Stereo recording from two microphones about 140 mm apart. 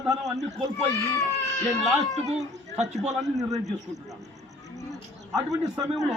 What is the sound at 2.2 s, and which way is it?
Speech, 55° right (ahead or behind).